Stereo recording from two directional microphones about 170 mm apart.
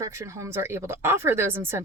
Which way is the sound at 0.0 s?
15° right (ahead or behind).